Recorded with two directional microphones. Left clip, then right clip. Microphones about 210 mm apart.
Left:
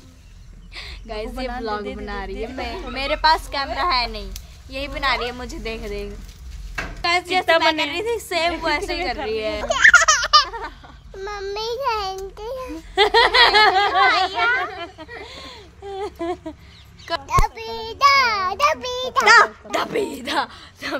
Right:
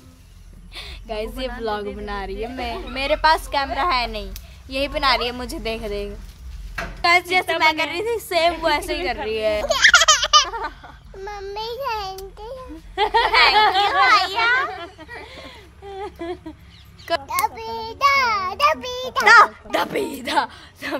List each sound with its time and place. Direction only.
0.7 s a sound: 5° right (ahead or behind)
1.6 s a woman's voice: 10° right (ahead or behind)
4.6 s a woman's voice: 25° right (ahead or behind)
7.0 s a woman's voice: 5° right (ahead or behind)
9.7 s baby laughter: 5° left (ahead or behind)
11.1 s a child's voice: 15° left (ahead or behind)
12.4 s a sound: 25° left (ahead or behind)
12.9 s speech: 55° left (ahead or behind)
13.4 s a sound: 45° left (ahead or behind)
14.3 s a woman's voice: 10° right (ahead or behind)
15.2 s a sound: 45° left (ahead or behind)
17.3 s a child's voice: 25° left (ahead or behind)
19.2 s a woman's voice: 20° right (ahead or behind)